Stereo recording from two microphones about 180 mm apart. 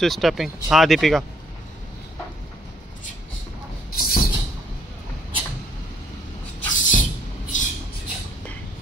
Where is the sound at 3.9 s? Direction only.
55° left (ahead or behind).